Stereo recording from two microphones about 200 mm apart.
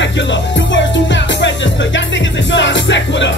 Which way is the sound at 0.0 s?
65° left (ahead or behind).